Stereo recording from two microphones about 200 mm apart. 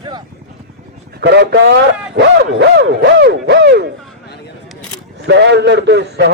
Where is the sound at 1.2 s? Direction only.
55° right (ahead or behind).